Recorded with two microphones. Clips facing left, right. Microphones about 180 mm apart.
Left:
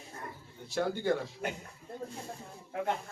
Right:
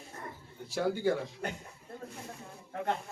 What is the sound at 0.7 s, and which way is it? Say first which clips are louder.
Speech: right 1 dB; 10° right (ahead or behind).